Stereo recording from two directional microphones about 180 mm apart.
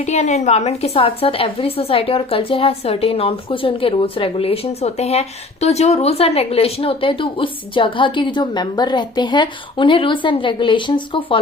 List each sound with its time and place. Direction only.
0.0 s a woman's voice: 40° left (ahead or behind)